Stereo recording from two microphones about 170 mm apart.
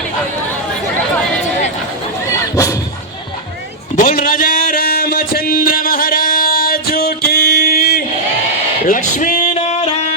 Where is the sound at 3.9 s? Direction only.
55° left (ahead or behind).